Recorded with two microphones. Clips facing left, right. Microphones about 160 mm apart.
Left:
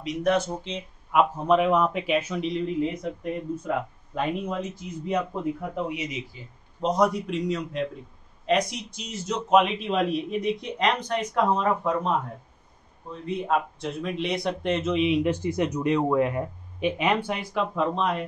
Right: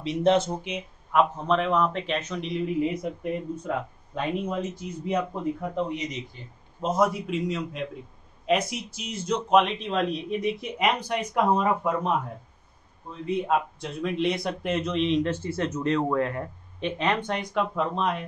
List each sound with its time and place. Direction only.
0.0 s speech: 25° right (ahead or behind)
1.1 s speech: 10° left (ahead or behind); by 3.1 s 10° right (ahead or behind)
3.6 s a man's voice: centre (ahead or behind)
10.6 s speech: 10° right (ahead or behind)
13.7 s speech: centre (ahead or behind)